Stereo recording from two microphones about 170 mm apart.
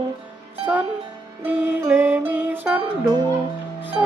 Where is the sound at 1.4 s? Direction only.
10° right (ahead or behind).